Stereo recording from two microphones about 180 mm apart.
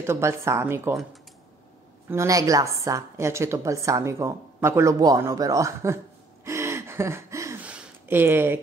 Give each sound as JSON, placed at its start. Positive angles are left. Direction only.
{"t": 0.0, "sound": "a woman's voice", "side_deg": -15}
{"t": 2.0, "sound": "a woman's voice", "side_deg": -15}
{"t": 6.4, "sound": "gasp", "side_deg": -15}
{"t": 7.7, "sound": "a sound", "side_deg": -10}